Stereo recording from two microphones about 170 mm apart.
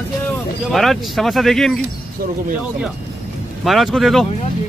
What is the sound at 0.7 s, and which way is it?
Speech, centre (ahead or behind).